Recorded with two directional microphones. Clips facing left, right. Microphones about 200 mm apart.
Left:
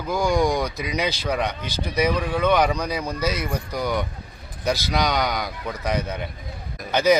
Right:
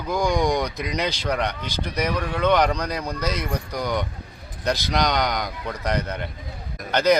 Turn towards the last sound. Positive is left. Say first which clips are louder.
# left 1 dB
turn(degrees=10)  # may be behind; listen again after turning